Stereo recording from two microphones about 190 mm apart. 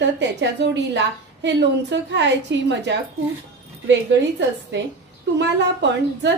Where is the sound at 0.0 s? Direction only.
65° right (ahead or behind).